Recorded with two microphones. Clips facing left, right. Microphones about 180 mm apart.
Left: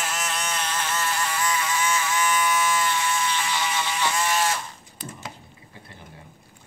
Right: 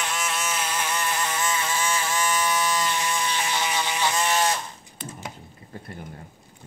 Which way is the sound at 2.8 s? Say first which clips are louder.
Left 1 dB; 20° right (ahead or behind).